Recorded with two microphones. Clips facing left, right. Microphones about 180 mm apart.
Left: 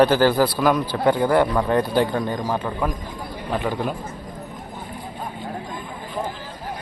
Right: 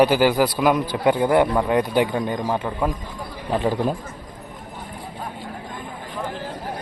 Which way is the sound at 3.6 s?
30° right (ahead or behind).